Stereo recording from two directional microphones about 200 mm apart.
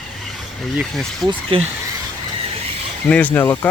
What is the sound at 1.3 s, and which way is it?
Speech, 25° right (ahead or behind).